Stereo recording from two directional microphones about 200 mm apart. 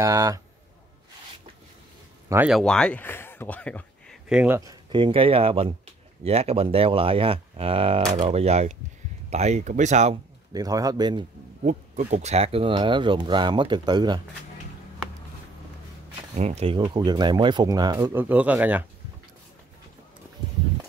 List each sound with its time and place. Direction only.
0.0 s a man's voice: 15° right (ahead or behind)
2.2 s speech: 10° right (ahead or behind)
2.5 s speech: 5° left (ahead or behind)
4.6 s speech: 20° right (ahead or behind)
10.5 s a man's voice: 20° right (ahead or behind)
11.6 s speech: 35° right (ahead or behind); by 14.2 s 20° right (ahead or behind)
16.3 s speech: 35° right (ahead or behind); by 18.9 s 10° right (ahead or behind)